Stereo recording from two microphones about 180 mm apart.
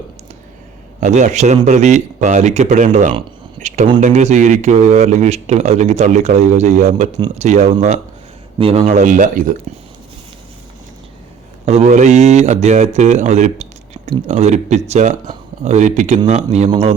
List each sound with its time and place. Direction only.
0.9 s a man's voice: 40° right (ahead or behind)
3.2 s a sound: 40° right (ahead or behind)
4.0 s speech: 40° right (ahead or behind)
11.6 s speech: 40° right (ahead or behind)